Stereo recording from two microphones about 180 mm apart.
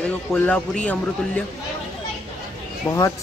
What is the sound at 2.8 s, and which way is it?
Speech, 15° left (ahead or behind).